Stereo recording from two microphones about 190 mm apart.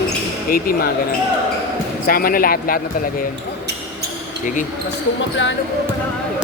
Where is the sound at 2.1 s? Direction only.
50° left (ahead or behind).